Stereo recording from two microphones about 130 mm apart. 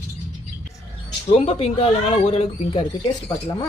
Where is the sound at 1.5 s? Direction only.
50° left (ahead or behind).